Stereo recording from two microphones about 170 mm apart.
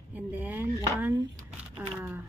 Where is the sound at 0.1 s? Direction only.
10° right (ahead or behind).